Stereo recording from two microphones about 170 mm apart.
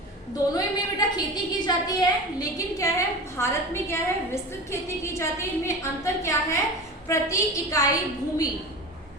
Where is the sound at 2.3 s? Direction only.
20° left (ahead or behind).